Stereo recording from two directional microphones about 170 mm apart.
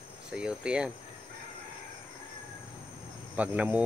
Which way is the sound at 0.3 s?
5° right (ahead or behind).